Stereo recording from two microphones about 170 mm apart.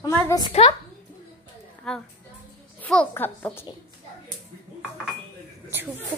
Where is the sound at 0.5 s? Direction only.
35° left (ahead or behind).